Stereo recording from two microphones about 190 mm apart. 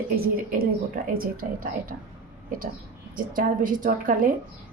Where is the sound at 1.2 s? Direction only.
50° right (ahead or behind).